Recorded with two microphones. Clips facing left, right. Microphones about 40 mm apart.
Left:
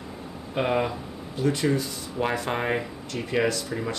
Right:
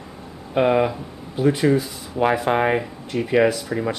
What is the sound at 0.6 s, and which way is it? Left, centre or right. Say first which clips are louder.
Speech: right 7 dB; centre.